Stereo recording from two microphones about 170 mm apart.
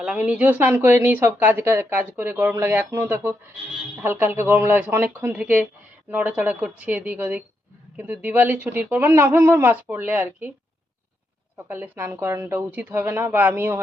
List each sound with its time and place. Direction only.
0.0 s speech: 5° right (ahead or behind)
11.5 s speech: 10° right (ahead or behind)